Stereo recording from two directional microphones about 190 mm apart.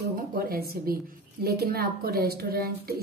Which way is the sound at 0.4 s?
50° right (ahead or behind).